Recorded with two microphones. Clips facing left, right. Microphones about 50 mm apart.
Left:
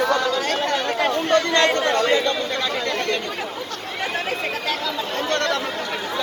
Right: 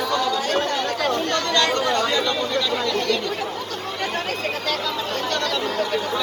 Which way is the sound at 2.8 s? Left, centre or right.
Left.